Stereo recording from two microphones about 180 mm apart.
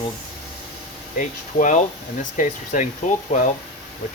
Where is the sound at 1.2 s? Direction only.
45° left (ahead or behind).